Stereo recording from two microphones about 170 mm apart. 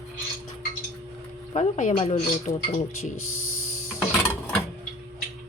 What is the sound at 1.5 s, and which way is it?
A woman's voice, 45° left (ahead or behind).